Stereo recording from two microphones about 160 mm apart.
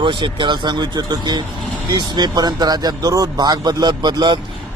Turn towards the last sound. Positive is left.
turn(degrees=-30)  # may be behind; listen again after turning